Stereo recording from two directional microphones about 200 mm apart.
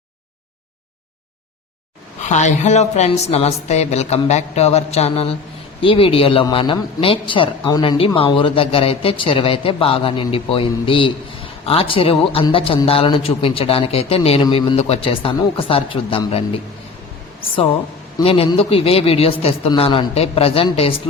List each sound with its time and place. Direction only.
2.2 s a woman's voice: 35° left (ahead or behind)
18.2 s a man's voice: 30° left (ahead or behind)